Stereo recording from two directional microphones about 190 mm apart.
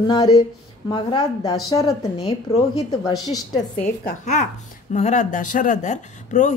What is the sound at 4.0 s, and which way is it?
Speech, 40° left (ahead or behind).